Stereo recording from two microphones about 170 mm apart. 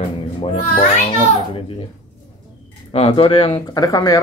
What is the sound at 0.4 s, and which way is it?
Speech, 35° left (ahead or behind).